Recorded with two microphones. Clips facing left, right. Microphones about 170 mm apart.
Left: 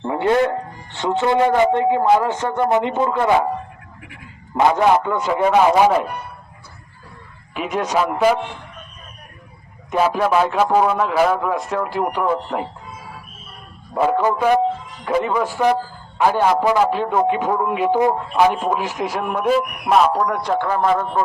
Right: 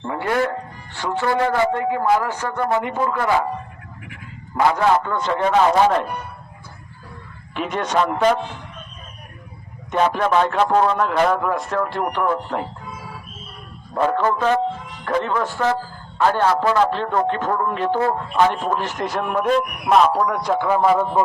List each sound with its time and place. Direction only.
0.0 s music: 20° left (ahead or behind)
0.9 s a man's voice: 20° left (ahead or behind)
4.5 s a man's voice: 20° left (ahead or behind)
7.5 s a man's voice: 5° left (ahead or behind)
9.9 s a man's voice: 5° left (ahead or behind)
13.9 s a man's voice: 10° left (ahead or behind); by 21.1 s 5° right (ahead or behind)